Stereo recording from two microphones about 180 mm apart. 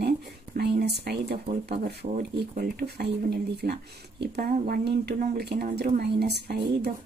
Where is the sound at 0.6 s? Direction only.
65° right (ahead or behind).